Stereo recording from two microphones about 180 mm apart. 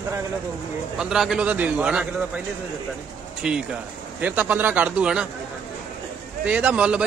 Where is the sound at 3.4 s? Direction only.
5° right (ahead or behind).